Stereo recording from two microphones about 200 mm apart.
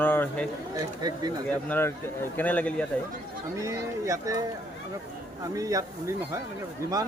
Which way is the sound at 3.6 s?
15° right (ahead or behind).